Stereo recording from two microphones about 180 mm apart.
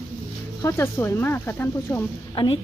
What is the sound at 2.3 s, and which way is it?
Speech, 30° left (ahead or behind).